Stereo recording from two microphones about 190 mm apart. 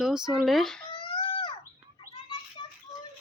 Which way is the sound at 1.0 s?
25° left (ahead or behind).